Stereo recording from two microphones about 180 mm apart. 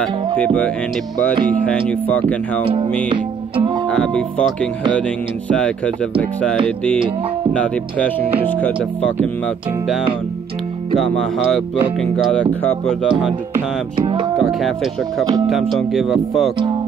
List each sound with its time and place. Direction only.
0.0 s speech: 5° left (ahead or behind)
3.1 s music: 25° right (ahead or behind)
3.9 s speech: 5° left (ahead or behind)
7.5 s speech: 5° left (ahead or behind)
11.0 s speech: centre (ahead or behind)
13.9 s music: 25° right (ahead or behind)
14.4 s speech: centre (ahead or behind)